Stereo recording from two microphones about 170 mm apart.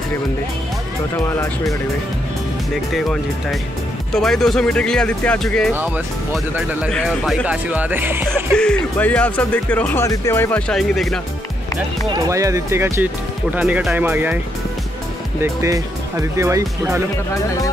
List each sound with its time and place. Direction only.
1.1 s speech: 15° left (ahead or behind)
2.9 s speech: centre (ahead or behind)
8.5 s speech: 10° left (ahead or behind)
12.1 s speech: 20° right (ahead or behind)
15.4 s speech: 15° right (ahead or behind)